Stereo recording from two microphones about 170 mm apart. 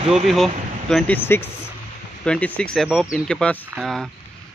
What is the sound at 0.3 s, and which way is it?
Speech, centre (ahead or behind).